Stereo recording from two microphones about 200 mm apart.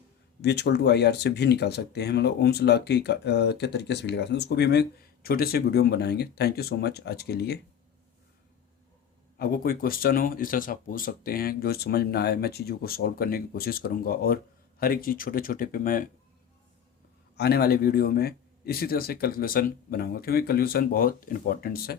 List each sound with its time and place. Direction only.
0.4 s speech: 55° left (ahead or behind)
9.4 s speech: 45° left (ahead or behind)
17.3 s speech: 55° left (ahead or behind)